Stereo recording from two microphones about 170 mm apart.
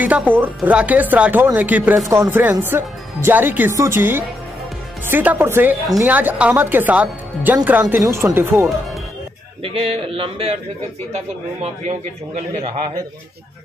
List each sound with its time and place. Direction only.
0.0 s speech: 10° right (ahead or behind)
9.6 s a man's voice: 35° right (ahead or behind)
12.4 s a man's voice: 40° right (ahead or behind)